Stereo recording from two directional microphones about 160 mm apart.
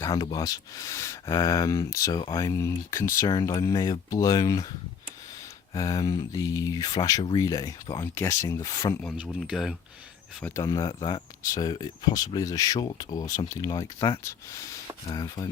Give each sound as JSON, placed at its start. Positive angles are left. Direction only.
{"t": 0.0, "sound": "speech", "side_deg": 25}
{"t": 5.7, "sound": "speech", "side_deg": 20}
{"t": 9.1, "sound": "speech", "side_deg": -5}
{"t": 10.4, "sound": "speech", "side_deg": 20}